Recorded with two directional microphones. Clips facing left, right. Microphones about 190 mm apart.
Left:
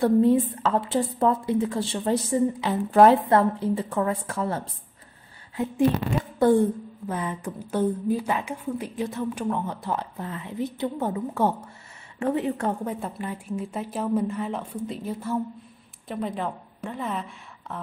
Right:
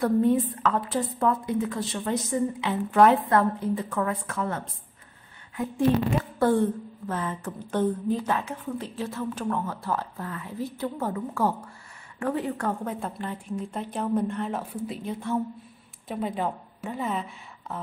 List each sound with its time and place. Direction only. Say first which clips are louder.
0.0 s a woman's voice: left 3 dB; 25° left (ahead or behind)
6.4 s a woman's voice: left 4 dB; 15° left (ahead or behind)
12.8 s a woman's voice: left 1 dB; 10° left (ahead or behind)